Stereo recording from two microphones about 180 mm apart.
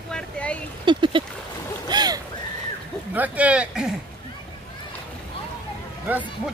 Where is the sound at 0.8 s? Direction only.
25° right (ahead or behind).